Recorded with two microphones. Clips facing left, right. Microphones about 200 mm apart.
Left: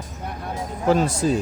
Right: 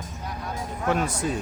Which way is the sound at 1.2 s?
30° left (ahead or behind).